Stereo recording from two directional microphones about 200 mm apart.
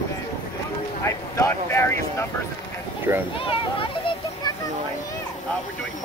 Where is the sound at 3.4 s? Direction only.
25° left (ahead or behind).